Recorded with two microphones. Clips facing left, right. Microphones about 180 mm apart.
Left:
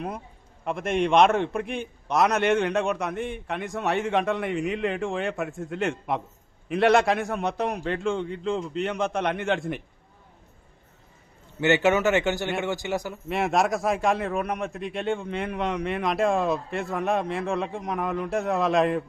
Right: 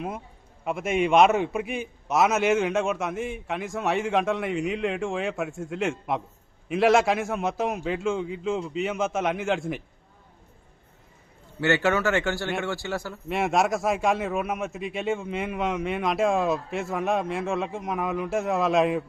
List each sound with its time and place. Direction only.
0.6 s a man's voice: 5° right (ahead or behind)
11.6 s a man's voice: 20° left (ahead or behind)
13.2 s a man's voice: centre (ahead or behind)